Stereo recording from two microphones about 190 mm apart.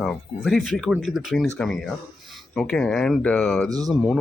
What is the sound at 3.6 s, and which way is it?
Speech, 20° right (ahead or behind).